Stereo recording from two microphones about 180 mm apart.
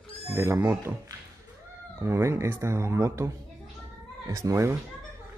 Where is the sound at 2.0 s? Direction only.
15° right (ahead or behind).